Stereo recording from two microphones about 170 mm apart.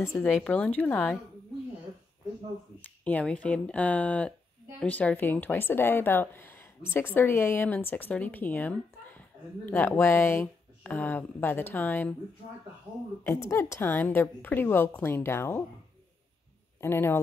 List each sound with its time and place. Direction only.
0.0 s speech: 15° left (ahead or behind)
3.0 s speech: 10° left (ahead or behind)
13.2 s speech: 15° left (ahead or behind)
16.8 s speech: 15° left (ahead or behind)